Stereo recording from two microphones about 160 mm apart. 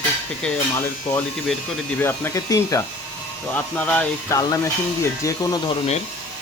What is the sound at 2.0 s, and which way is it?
Speech, 15° left (ahead or behind).